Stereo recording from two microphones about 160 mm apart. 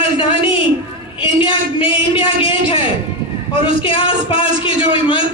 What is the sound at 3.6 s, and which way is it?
Speech, 30° left (ahead or behind).